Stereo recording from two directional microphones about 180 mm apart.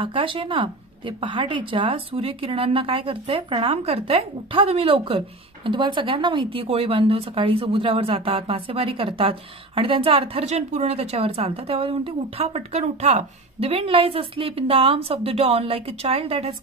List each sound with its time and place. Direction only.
0.0 s a woman's voice: 30° right (ahead or behind)